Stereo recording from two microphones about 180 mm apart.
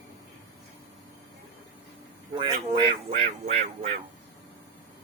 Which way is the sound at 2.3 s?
25° right (ahead or behind).